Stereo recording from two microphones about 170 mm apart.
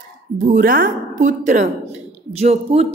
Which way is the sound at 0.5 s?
55° right (ahead or behind).